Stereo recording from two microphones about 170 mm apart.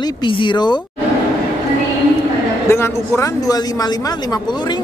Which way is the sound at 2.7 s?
15° left (ahead or behind).